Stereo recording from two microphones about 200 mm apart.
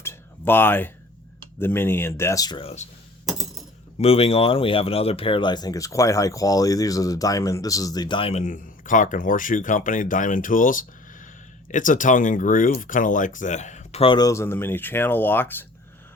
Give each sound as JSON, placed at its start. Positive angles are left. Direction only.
{"t": 0.0, "sound": "a sound", "side_deg": 10}
{"t": 1.5, "sound": "speech", "side_deg": 10}
{"t": 3.2, "sound": "coin", "side_deg": 0}
{"t": 3.9, "sound": "speech", "side_deg": 30}